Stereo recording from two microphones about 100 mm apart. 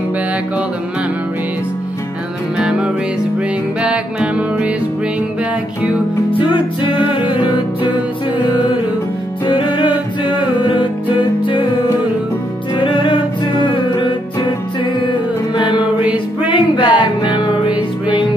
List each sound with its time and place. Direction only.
2.5 s music: 10° right (ahead or behind)
6.3 s music: 60° left (ahead or behind)
9.8 s music: 55° left (ahead or behind)
12.7 s music: 55° left (ahead or behind)
15.5 s mantra: 50° left (ahead or behind)
15.8 s music: 15° right (ahead or behind)
16.4 s music: 55° left (ahead or behind)
17.5 s music: 15° right (ahead or behind)